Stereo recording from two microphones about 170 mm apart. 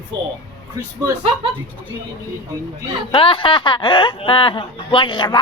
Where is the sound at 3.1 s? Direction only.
30° left (ahead or behind).